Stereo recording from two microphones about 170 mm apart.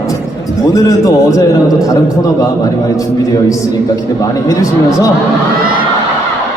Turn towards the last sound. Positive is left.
turn(degrees=-60)  # may be behind; listen again after turning